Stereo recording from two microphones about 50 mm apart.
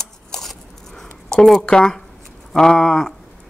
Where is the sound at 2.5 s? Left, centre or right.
Centre.